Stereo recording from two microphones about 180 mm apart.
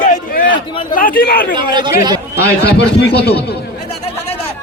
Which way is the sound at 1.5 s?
25° right (ahead or behind).